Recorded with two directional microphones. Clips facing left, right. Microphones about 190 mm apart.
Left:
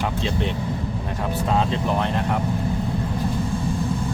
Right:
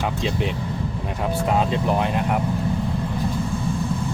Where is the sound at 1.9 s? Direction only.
10° right (ahead or behind).